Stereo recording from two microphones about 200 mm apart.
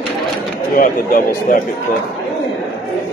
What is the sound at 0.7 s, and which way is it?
Speech, 45° left (ahead or behind).